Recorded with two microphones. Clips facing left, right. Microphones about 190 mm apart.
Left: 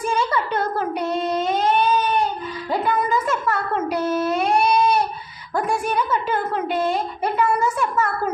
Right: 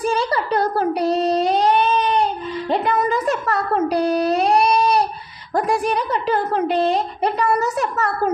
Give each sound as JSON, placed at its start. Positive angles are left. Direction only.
{"t": 0.0, "sound": "a sound", "side_deg": -35}
{"t": 0.8, "sound": "child singing", "side_deg": -35}
{"t": 5.5, "sound": "a woman's voice", "side_deg": -35}